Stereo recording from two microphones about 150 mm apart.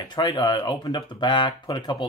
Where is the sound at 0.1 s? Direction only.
25° left (ahead or behind).